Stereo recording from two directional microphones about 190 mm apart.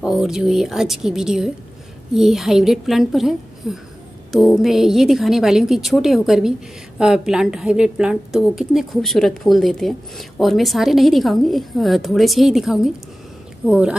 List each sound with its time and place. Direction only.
0.0 s a woman's voice: 5° right (ahead or behind)